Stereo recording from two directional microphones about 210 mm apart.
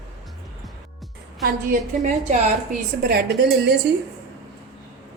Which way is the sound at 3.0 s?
50° right (ahead or behind).